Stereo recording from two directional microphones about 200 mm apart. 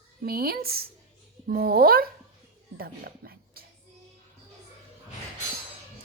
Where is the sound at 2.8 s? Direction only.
50° right (ahead or behind).